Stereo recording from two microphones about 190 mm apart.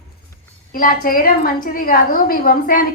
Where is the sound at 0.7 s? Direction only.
50° left (ahead or behind).